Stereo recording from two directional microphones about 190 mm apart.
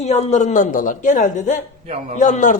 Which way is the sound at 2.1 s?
40° left (ahead or behind).